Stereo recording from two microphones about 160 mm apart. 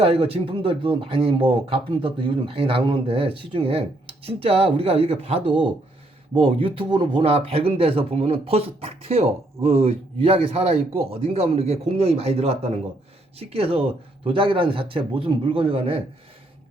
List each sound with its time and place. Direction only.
0.0 s speech: 35° right (ahead or behind)